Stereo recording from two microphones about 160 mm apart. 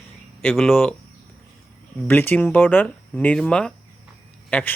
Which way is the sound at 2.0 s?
10° left (ahead or behind).